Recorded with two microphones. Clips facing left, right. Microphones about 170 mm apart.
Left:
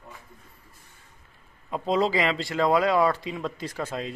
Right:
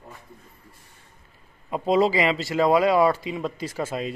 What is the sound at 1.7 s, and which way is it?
Speech, 5° right (ahead or behind).